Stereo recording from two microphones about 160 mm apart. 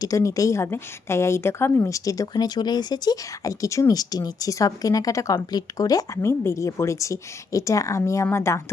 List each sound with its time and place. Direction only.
0.0 s a woman's voice: 20° left (ahead or behind)